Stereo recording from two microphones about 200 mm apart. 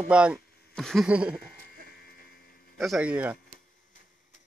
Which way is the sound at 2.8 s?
5° right (ahead or behind).